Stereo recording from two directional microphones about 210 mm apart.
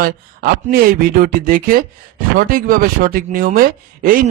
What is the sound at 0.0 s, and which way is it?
A man's voice, 45° right (ahead or behind).